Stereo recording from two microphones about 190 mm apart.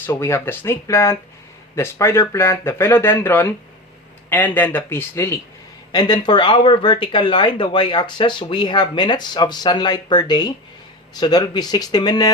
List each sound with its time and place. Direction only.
0.0 s speech: 15° left (ahead or behind)